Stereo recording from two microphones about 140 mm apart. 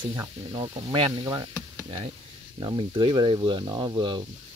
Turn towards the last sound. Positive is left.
turn(degrees=-30)  # may be behind; listen again after turning